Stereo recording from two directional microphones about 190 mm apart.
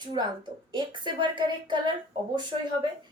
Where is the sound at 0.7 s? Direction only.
25° right (ahead or behind).